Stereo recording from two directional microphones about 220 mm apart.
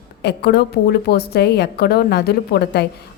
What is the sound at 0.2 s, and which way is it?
A woman's voice, 50° left (ahead or behind).